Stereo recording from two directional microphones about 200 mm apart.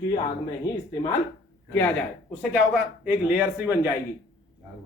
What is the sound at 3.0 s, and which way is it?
Speech, 10° right (ahead or behind).